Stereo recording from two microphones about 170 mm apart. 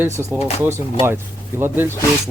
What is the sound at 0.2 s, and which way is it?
Speech, 15° right (ahead or behind).